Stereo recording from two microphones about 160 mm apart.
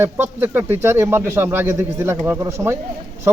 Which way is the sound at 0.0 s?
15° right (ahead or behind).